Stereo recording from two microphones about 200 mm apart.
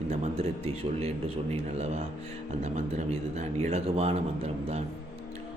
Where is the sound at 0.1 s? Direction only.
30° right (ahead or behind).